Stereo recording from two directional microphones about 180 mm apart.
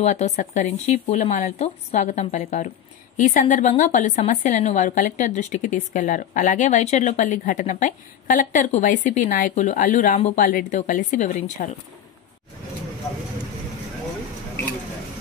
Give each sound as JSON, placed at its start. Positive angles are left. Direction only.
{"t": 0.0, "sound": "a woman's voice", "side_deg": 40}